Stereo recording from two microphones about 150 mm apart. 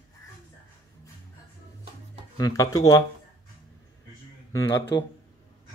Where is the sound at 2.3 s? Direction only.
25° left (ahead or behind).